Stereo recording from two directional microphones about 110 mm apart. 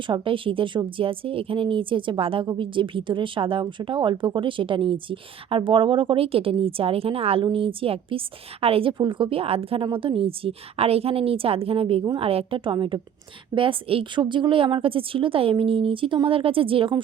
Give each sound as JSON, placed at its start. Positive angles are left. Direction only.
{"t": 0.1, "sound": "a woman's voice", "side_deg": -50}
{"t": 9.8, "sound": "a woman's voice", "side_deg": -50}